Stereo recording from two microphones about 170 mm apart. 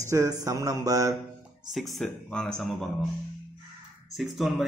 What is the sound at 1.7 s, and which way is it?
Speech, centre (ahead or behind).